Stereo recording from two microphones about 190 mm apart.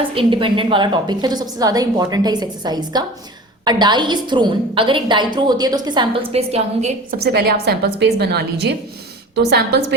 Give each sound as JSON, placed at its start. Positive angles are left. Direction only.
{"t": 0.1, "sound": "a woman's voice", "side_deg": -25}
{"t": 7.1, "sound": "a woman's voice", "side_deg": -55}